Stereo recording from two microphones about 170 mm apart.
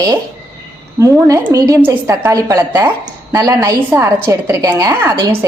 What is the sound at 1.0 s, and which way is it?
A woman's voice, 20° right (ahead or behind).